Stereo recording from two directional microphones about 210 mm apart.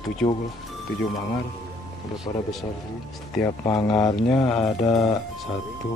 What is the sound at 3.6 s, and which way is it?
Speech, 20° left (ahead or behind).